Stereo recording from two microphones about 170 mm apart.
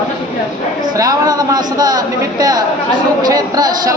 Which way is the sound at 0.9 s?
20° right (ahead or behind).